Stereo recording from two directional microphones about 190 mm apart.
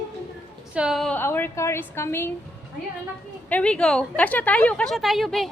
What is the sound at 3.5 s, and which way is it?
A woman's voice, 5° left (ahead or behind).